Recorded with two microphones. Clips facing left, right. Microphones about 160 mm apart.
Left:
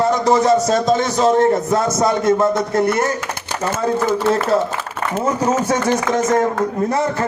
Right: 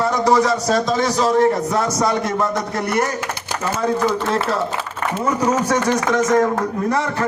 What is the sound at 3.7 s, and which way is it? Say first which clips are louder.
Speech: left 1 dB; 50° left (ahead or behind).